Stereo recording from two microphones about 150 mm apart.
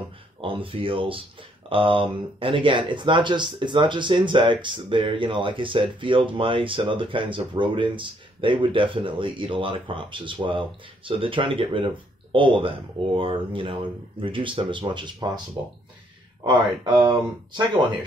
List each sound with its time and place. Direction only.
0.4 s speech: 35° right (ahead or behind)
16.4 s speech: 30° right (ahead or behind)